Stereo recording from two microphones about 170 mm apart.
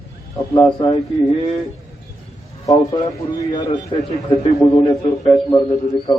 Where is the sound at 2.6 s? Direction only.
20° left (ahead or behind).